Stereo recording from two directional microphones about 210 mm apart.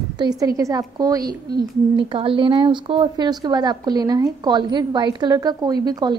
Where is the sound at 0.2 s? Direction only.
20° right (ahead or behind).